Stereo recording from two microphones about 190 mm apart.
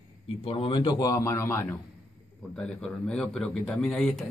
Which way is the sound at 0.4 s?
30° left (ahead or behind).